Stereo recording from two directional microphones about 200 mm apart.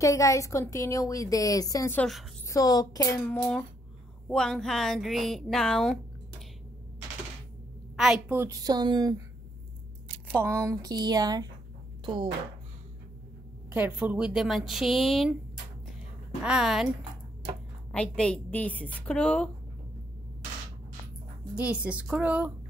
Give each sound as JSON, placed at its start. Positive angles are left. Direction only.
{"t": 0.0, "sound": "a woman's voice", "side_deg": 15}
{"t": 7.9, "sound": "a woman's voice", "side_deg": -5}
{"t": 10.3, "sound": "a woman's voice", "side_deg": -10}
{"t": 13.7, "sound": "speech", "side_deg": -10}
{"t": 16.4, "sound": "speech", "side_deg": -5}
{"t": 17.9, "sound": "speech", "side_deg": 5}
{"t": 21.5, "sound": "a woman's voice", "side_deg": -5}